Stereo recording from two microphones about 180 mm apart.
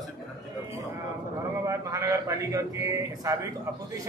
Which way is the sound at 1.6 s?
15° right (ahead or behind).